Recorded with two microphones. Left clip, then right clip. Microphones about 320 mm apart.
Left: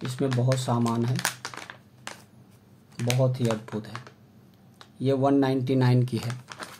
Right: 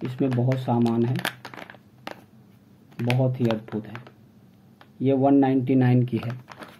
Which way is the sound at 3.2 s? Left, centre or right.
Left.